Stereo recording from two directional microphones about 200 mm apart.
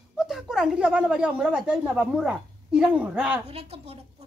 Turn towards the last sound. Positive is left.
turn(degrees=-30)  # may be behind; listen again after turning